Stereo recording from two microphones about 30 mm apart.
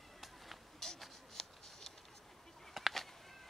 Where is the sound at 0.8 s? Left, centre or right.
Centre.